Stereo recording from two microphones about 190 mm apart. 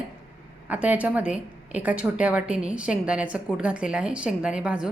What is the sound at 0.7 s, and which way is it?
A woman's voice, 10° right (ahead or behind).